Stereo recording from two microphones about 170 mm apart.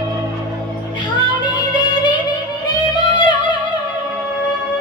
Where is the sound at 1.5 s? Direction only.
25° left (ahead or behind).